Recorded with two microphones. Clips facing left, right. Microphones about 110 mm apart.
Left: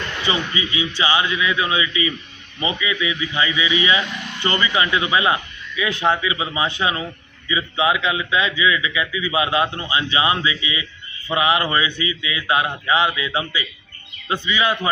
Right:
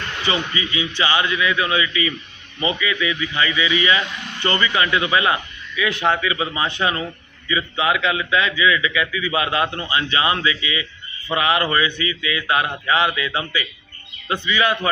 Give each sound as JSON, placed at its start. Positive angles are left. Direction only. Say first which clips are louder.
{"t": 0.3, "sound": "a man's voice", "louder": "even", "side_deg": 15}